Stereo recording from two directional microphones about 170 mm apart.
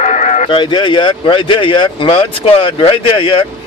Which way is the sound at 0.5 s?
30° left (ahead or behind).